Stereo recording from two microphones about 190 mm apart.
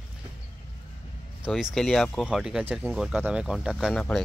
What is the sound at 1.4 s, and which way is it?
Speech, 5° right (ahead or behind).